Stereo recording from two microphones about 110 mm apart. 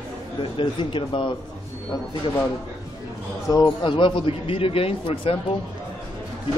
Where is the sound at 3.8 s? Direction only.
50° left (ahead or behind).